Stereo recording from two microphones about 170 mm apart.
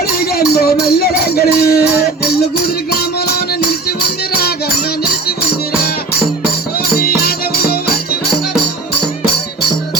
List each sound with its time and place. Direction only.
0.3 s music: 65° left (ahead or behind)
7.0 s music: 65° left (ahead or behind)